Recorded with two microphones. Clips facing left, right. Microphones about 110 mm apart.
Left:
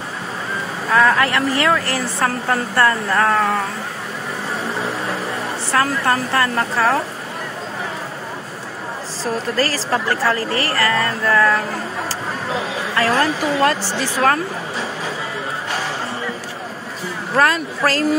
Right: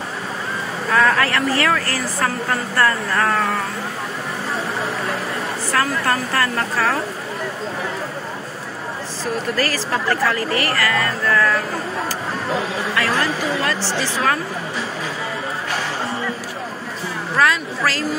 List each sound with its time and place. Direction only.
1.1 s a woman's voice: 20° left (ahead or behind)
5.7 s a woman's voice: 25° left (ahead or behind)
9.2 s a woman's voice: 30° left (ahead or behind)
12.9 s speech: 35° left (ahead or behind)
17.4 s speech: 45° left (ahead or behind)